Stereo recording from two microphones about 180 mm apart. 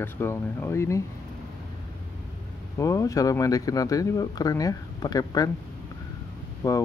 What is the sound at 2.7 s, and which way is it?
Speech, 20° left (ahead or behind).